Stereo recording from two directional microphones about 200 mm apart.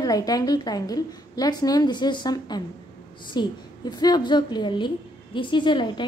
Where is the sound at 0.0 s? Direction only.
20° left (ahead or behind).